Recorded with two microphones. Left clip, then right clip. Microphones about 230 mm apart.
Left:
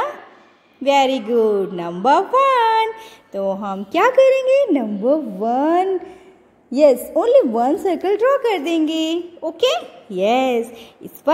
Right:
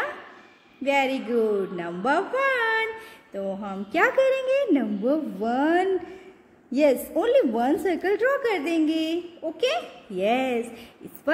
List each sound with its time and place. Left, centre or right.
0.8 s a woman's voice: left